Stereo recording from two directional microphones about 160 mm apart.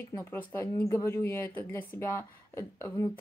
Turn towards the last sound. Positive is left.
turn(degrees=15)  # may be behind; listen again after turning